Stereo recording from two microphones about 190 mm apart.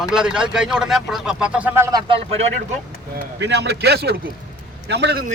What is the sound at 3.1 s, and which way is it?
Speech, 65° right (ahead or behind).